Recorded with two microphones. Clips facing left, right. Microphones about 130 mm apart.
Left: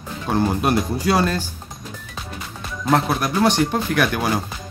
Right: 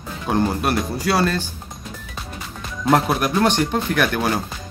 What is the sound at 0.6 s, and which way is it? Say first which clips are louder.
Speech: left 2 dB; 20° left (ahead or behind).